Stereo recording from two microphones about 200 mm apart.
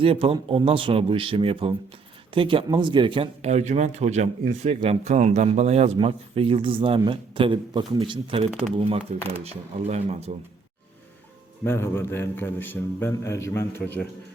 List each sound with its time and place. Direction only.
0.0 s speech: 25° right (ahead or behind)
11.6 s a man's voice: 10° left (ahead or behind)